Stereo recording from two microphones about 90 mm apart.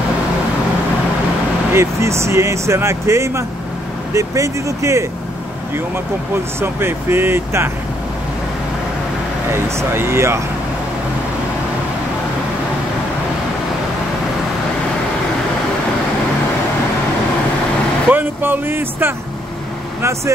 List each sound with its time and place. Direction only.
1.7 s speech: 30° right (ahead or behind)
6.6 s speech: 25° right (ahead or behind)
9.5 s speech: 30° right (ahead or behind)
18.1 s speech: 20° right (ahead or behind)